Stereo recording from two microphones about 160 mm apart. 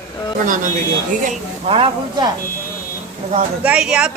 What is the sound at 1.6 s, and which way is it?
Speech, 35° right (ahead or behind).